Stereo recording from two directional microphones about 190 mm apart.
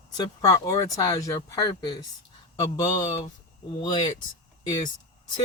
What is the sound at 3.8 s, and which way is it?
Speech, 20° left (ahead or behind).